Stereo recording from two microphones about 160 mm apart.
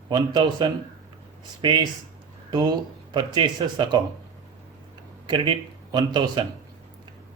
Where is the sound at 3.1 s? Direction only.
30° right (ahead or behind).